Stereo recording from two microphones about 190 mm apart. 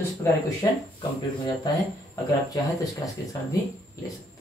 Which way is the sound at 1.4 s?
20° left (ahead or behind).